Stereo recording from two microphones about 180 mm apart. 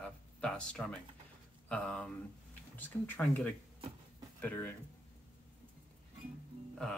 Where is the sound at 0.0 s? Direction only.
5° left (ahead or behind).